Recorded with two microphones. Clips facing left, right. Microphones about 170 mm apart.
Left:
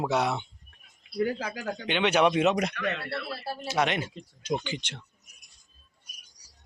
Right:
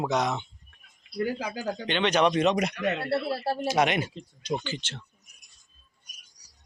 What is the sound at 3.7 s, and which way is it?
Speech, 15° right (ahead or behind).